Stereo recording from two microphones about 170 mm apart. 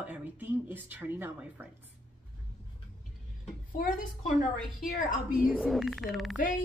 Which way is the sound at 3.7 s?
55° left (ahead or behind).